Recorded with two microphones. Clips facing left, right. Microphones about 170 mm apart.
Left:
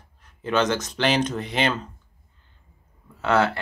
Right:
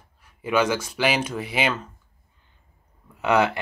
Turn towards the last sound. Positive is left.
turn(degrees=-15)  # may be behind; listen again after turning